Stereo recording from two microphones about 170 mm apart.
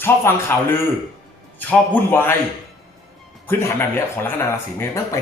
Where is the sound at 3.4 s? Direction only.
15° left (ahead or behind).